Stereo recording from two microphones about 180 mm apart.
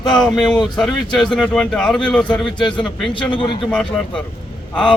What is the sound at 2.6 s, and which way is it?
Speech, 25° left (ahead or behind).